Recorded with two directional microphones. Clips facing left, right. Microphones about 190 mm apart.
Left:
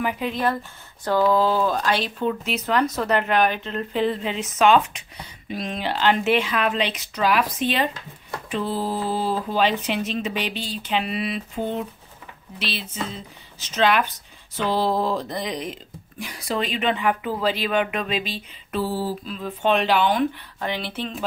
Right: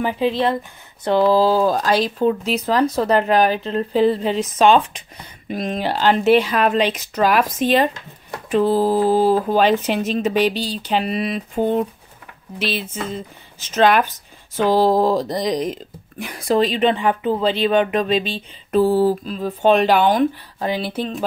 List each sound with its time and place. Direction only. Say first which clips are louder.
0.0 s speech: right 5 dB; 30° right (ahead or behind)
5.5 s speech: right 5 dB; 45° right (ahead or behind)
16.5 s speech: right 7 dB; 35° right (ahead or behind)
18.8 s speech: right 10 dB; 55° right (ahead or behind)